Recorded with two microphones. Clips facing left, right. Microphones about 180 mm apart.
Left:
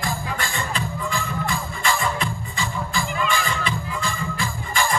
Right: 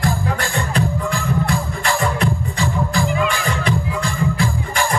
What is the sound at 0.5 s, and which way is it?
Music, 65° right (ahead or behind).